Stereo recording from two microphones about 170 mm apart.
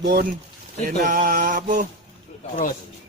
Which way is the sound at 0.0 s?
65° right (ahead or behind).